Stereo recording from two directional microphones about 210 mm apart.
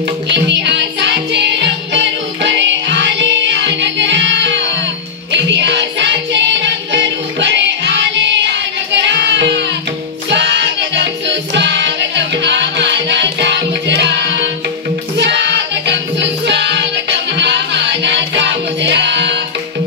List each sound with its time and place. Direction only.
0.3 s music: 55° right (ahead or behind)